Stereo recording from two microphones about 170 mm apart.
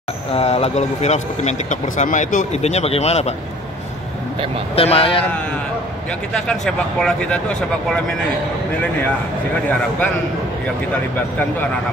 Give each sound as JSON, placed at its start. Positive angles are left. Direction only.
{"t": 0.3, "sound": "speech", "side_deg": 35}
{"t": 4.7, "sound": "speech", "side_deg": 35}
{"t": 6.3, "sound": "speech", "side_deg": 5}